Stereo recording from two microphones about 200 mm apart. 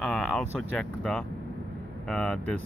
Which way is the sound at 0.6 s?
5° left (ahead or behind).